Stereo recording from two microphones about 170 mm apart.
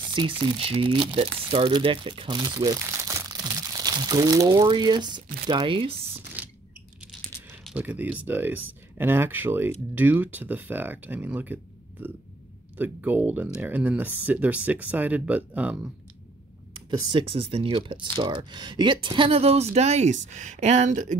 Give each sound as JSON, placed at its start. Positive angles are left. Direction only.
{"t": 0.1, "sound": "speech", "side_deg": -30}
{"t": 6.4, "sound": "a sound", "side_deg": -10}
{"t": 7.7, "sound": "speech", "side_deg": -10}
{"t": 17.1, "sound": "speech", "side_deg": -30}